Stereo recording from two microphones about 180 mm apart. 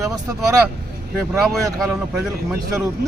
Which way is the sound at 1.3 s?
Centre (ahead or behind).